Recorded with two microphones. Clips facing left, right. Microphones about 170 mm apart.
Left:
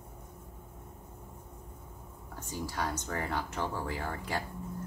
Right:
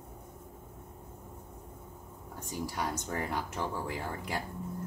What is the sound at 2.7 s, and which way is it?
Speech, 15° right (ahead or behind).